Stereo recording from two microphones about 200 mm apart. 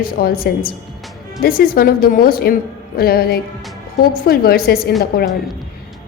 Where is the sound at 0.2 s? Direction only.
50° left (ahead or behind).